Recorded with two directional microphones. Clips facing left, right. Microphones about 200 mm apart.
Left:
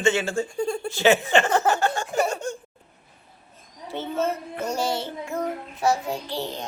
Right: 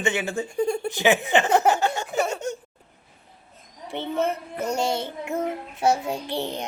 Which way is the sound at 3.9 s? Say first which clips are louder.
Right 1 dB; 15° right (ahead or behind).